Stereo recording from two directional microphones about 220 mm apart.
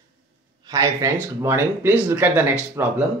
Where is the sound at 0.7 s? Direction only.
15° right (ahead or behind).